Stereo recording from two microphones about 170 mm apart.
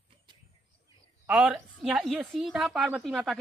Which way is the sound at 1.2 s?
5° right (ahead or behind).